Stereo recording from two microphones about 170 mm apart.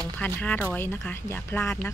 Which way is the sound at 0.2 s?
10° left (ahead or behind).